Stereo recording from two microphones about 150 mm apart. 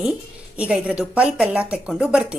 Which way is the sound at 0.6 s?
5° right (ahead or behind).